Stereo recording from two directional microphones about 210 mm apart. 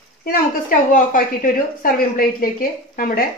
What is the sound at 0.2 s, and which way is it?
Speech, 45° left (ahead or behind).